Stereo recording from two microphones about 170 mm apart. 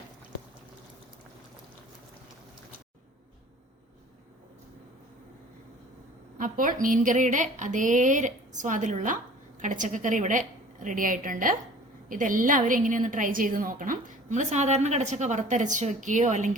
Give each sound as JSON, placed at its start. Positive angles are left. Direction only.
{"t": 6.3, "sound": "a woman's voice", "side_deg": -55}